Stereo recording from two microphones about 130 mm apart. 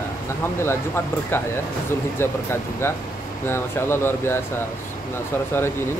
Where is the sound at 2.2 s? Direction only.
20° left (ahead or behind).